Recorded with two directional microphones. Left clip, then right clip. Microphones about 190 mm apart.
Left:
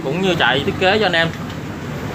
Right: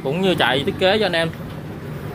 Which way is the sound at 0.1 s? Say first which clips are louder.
Left 2 dB; 25° right (ahead or behind).